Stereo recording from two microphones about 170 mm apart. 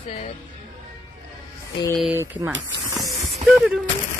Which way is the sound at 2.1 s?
15° right (ahead or behind).